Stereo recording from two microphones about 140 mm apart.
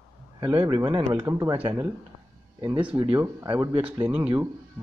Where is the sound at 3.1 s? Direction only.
15° right (ahead or behind).